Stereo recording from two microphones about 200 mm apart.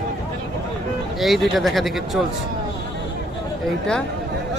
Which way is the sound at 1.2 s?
Centre (ahead or behind).